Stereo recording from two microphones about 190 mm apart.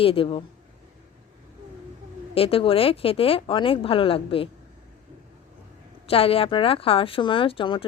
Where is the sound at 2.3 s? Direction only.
30° left (ahead or behind).